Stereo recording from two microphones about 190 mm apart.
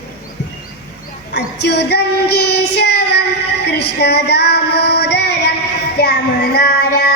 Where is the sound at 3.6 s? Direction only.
60° left (ahead or behind).